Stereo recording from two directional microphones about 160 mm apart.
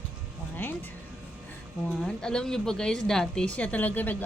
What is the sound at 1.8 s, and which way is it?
A woman's voice, 5° left (ahead or behind).